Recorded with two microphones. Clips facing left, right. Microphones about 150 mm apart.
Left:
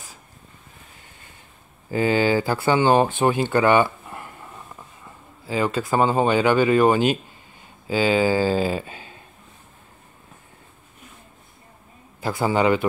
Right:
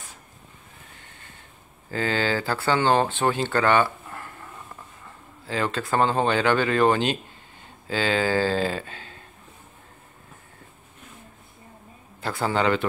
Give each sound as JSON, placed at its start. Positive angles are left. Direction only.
{"t": 1.9, "sound": "speech", "side_deg": 10}
{"t": 12.2, "sound": "speech", "side_deg": 10}